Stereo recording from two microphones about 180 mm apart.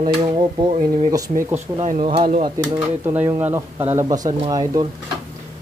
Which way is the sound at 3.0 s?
10° right (ahead or behind).